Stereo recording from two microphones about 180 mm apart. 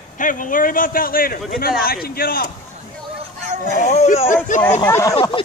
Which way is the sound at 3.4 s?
40° right (ahead or behind).